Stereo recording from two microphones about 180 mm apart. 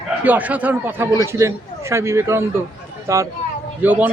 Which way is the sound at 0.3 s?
10° right (ahead or behind).